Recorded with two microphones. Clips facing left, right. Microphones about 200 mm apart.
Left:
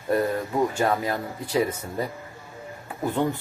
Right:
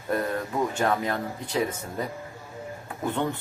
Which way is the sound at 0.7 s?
5° left (ahead or behind).